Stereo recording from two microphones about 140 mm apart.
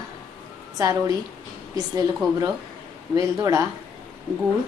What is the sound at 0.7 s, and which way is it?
Speech, 25° right (ahead or behind).